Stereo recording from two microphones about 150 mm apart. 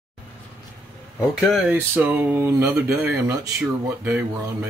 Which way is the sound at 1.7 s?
10° right (ahead or behind).